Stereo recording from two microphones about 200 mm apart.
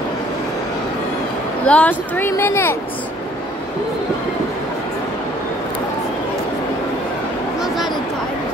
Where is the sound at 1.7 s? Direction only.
5° left (ahead or behind).